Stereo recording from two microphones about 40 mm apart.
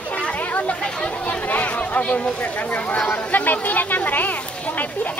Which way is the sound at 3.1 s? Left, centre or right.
Left.